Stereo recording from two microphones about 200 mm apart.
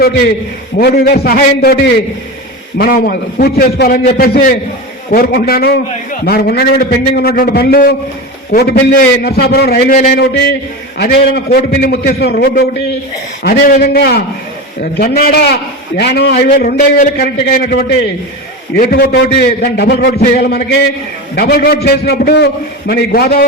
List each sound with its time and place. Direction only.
0.8 s a man's voice: 55° left (ahead or behind)